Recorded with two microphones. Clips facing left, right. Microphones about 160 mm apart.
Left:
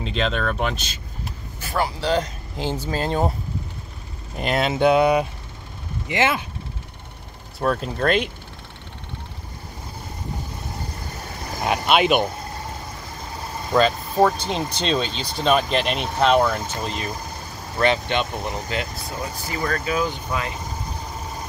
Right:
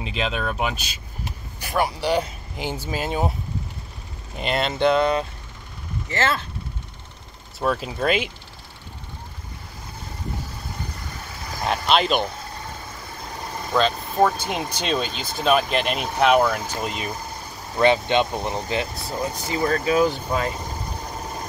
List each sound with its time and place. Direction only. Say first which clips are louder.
0.0 s speech: left 2 dB; 5° right (ahead or behind)
4.4 s speech: left 2 dB; 5° left (ahead or behind)
7.5 s speech: left 1 dB; centre (ahead or behind)
11.6 s speech: left 2 dB; 5° left (ahead or behind)
13.7 s speech: left 2 dB; 5° left (ahead or behind)
16.8 s speech: even; 15° right (ahead or behind)
20.0 s speech: right 4 dB; 40° right (ahead or behind)